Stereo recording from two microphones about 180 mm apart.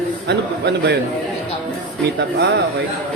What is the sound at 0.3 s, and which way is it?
Speech, 70° right (ahead or behind).